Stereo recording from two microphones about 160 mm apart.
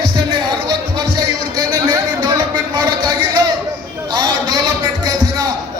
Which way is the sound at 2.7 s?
25° right (ahead or behind).